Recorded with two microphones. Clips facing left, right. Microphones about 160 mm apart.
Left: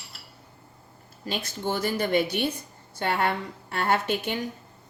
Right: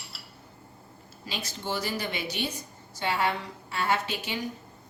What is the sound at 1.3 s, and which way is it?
A woman's voice, 55° left (ahead or behind).